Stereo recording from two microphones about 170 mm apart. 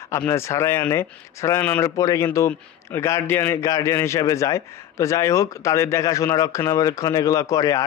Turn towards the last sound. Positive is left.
turn(degrees=20)  # may be behind; listen again after turning